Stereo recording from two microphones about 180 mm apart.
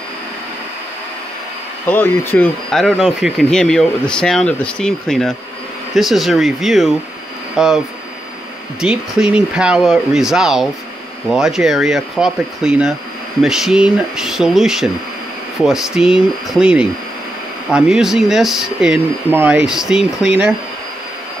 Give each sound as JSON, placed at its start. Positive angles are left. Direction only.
{"t": 1.9, "sound": "speech", "side_deg": 10}
{"t": 8.8, "sound": "speech", "side_deg": -5}